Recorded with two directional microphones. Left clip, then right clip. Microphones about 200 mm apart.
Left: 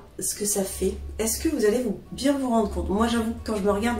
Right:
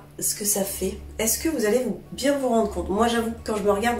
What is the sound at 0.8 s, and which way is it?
Speech, 5° right (ahead or behind).